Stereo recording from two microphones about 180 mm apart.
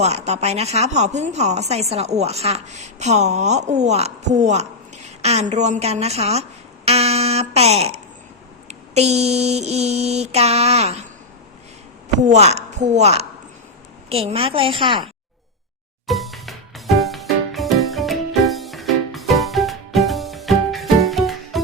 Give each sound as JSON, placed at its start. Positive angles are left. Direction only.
{"t": 0.0, "sound": "speech", "side_deg": -35}
{"t": 12.0, "sound": "a woman's voice", "side_deg": -40}
{"t": 16.0, "sound": "music", "side_deg": 0}